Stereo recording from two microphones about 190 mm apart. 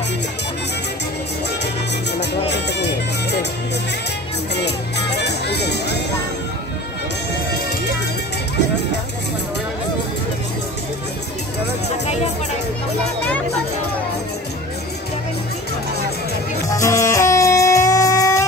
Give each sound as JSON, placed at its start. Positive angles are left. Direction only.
{"t": 2.1, "sound": "music", "side_deg": 65}
{"t": 4.6, "sound": "music", "side_deg": 60}
{"t": 16.7, "sound": "music", "side_deg": 15}